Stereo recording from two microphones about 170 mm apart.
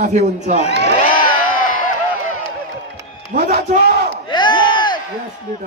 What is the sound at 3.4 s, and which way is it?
Speech, 45° right (ahead or behind).